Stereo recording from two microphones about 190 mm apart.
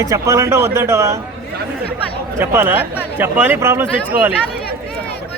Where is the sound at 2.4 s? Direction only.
10° right (ahead or behind).